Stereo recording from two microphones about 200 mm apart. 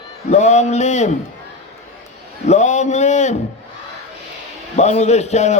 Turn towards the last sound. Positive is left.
turn(degrees=35)  # may be behind; listen again after turning